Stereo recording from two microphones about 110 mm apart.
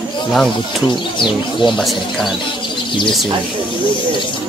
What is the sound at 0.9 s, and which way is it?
Speech, 45° left (ahead or behind).